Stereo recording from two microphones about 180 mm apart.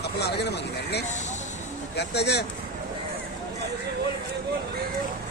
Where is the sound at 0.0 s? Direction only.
65° left (ahead or behind).